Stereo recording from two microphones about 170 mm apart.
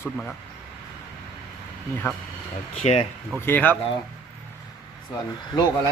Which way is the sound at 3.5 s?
10° left (ahead or behind).